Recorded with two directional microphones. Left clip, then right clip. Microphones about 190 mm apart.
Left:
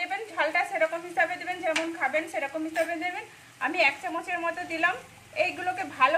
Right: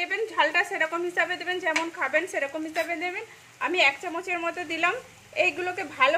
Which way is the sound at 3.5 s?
50° right (ahead or behind).